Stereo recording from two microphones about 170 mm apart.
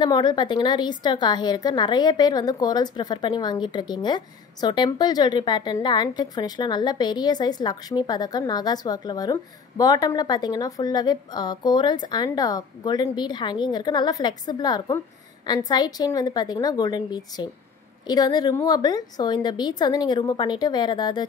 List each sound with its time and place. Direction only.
0.0 s a woman's voice: 25° left (ahead or behind)